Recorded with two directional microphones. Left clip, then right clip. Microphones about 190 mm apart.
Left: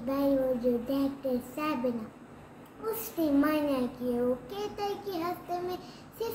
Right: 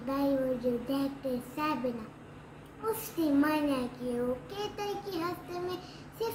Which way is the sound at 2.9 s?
Centre (ahead or behind).